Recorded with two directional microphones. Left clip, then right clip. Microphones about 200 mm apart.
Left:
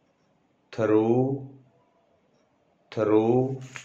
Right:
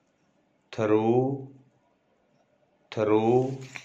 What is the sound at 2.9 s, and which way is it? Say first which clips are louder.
Speech: left 1 dB; 20° right (ahead or behind).